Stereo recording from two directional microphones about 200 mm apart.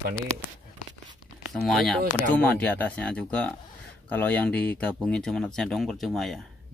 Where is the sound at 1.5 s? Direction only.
Centre (ahead or behind).